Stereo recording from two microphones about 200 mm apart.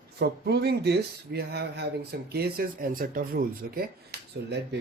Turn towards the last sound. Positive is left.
turn(degrees=-55)  # may be behind; listen again after turning